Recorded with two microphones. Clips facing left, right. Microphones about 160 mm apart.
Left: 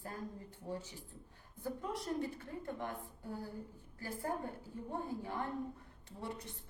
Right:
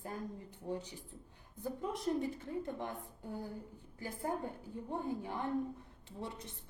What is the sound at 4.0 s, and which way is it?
Speech, 15° right (ahead or behind).